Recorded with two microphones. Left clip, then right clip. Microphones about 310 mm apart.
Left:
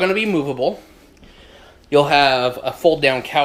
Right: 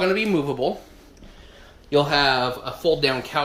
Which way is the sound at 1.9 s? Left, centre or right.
Centre.